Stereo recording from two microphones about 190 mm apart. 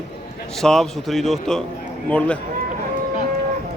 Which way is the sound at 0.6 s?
Centre (ahead or behind).